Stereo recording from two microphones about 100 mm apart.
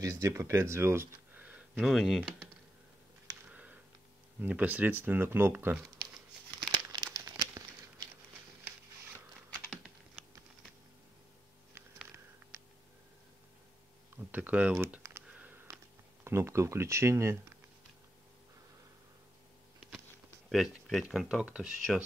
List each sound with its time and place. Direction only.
0.0 s speech: 35° right (ahead or behind)
1.8 s speech: centre (ahead or behind)
3.3 s a sound: 15° right (ahead or behind)
4.4 s speech: 15° right (ahead or behind)
6.7 s crumpling: 40° right (ahead or behind)
12.5 s a sound: 25° right (ahead or behind)
14.1 s speech: 15° right (ahead or behind)
14.8 s computer keyboard: 25° right (ahead or behind)
15.2 s a sound: 15° right (ahead or behind)
16.3 s speech: 25° right (ahead or behind)
20.4 s speech: centre (ahead or behind)